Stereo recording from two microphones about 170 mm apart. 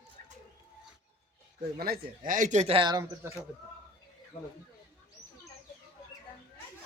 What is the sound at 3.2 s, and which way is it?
Speech, 15° right (ahead or behind).